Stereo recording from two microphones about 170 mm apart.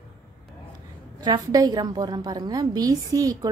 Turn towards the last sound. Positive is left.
turn(degrees=-20)  # may be behind; listen again after turning